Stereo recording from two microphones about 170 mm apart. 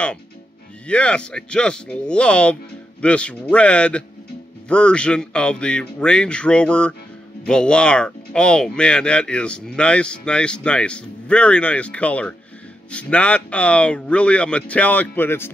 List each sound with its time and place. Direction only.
0.8 s speech: 5° left (ahead or behind)